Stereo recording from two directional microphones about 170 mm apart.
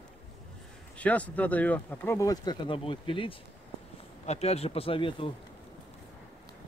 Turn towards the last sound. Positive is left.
turn(degrees=30)  # may be behind; listen again after turning